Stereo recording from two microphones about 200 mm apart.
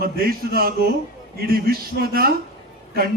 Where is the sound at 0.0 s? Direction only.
50° right (ahead or behind).